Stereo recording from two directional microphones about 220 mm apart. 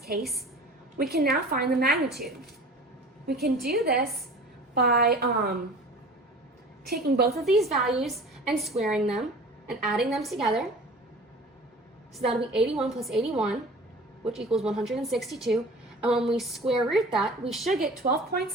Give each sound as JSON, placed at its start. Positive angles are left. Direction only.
{"t": 0.2, "sound": "a woman's voice", "side_deg": 0}
{"t": 0.9, "sound": "a woman's voice", "side_deg": -45}
{"t": 2.0, "sound": "a woman's voice", "side_deg": 0}
{"t": 3.4, "sound": "a woman's voice", "side_deg": -45}
{"t": 6.8, "sound": "a woman's voice", "side_deg": -45}
{"t": 7.3, "sound": "a woman's voice", "side_deg": 0}
{"t": 12.5, "sound": "a woman's voice", "side_deg": 0}
{"t": 18.1, "sound": "a woman's voice", "side_deg": -45}